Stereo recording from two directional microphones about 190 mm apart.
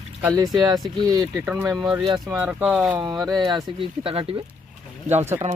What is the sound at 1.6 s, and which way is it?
Speech, 15° right (ahead or behind).